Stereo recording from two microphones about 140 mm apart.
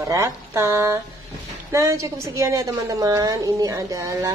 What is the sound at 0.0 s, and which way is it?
A woman's voice, 20° right (ahead or behind).